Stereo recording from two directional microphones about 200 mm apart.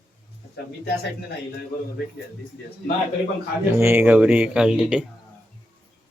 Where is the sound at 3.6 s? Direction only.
10° right (ahead or behind).